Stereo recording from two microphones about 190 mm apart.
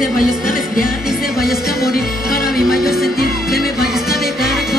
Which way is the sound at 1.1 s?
Centre (ahead or behind).